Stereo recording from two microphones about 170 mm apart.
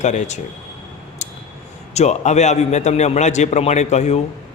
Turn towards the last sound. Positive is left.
turn(degrees=40)  # may be behind; listen again after turning